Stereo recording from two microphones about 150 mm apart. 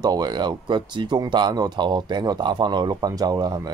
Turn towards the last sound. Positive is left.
turn(degrees=-25)  # may be behind; listen again after turning